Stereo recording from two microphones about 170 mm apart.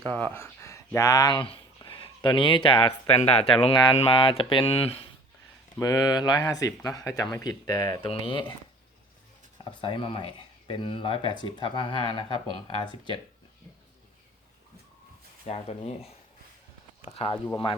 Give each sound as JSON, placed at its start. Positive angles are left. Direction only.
{"t": 0.0, "sound": "speech", "side_deg": 10}
{"t": 5.8, "sound": "speech", "side_deg": 25}
{"t": 9.6, "sound": "speech", "side_deg": 30}
{"t": 15.4, "sound": "speech", "side_deg": 35}